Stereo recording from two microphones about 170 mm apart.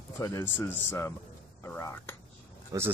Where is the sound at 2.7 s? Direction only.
20° right (ahead or behind).